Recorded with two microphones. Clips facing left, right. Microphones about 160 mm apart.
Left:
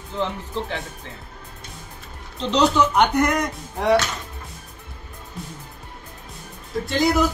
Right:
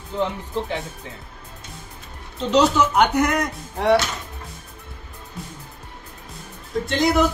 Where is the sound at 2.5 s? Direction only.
5° right (ahead or behind).